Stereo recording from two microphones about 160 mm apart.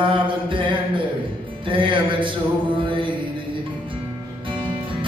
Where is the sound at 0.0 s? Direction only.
30° right (ahead or behind).